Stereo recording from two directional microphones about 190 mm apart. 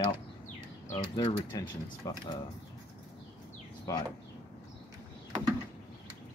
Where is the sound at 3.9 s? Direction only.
15° left (ahead or behind).